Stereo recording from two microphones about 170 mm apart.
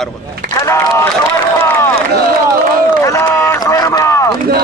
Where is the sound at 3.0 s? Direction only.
15° left (ahead or behind).